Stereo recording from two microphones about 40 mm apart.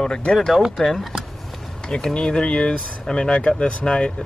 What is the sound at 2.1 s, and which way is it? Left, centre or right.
Speech, left.